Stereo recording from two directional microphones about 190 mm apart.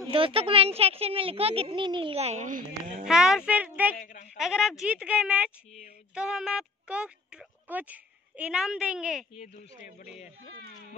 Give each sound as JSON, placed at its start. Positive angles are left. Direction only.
{"t": 0.1, "sound": "speech", "side_deg": -30}
{"t": 3.1, "sound": "speech", "side_deg": -5}
{"t": 4.0, "sound": "speech", "side_deg": 45}
{"t": 4.4, "sound": "speech", "side_deg": 0}
{"t": 9.4, "sound": "speech", "side_deg": 35}